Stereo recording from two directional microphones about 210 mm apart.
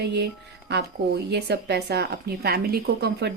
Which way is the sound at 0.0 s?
55° right (ahead or behind).